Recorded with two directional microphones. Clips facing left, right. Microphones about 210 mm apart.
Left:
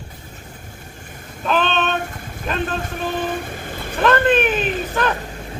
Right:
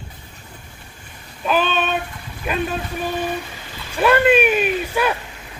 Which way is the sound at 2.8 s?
50° left (ahead or behind).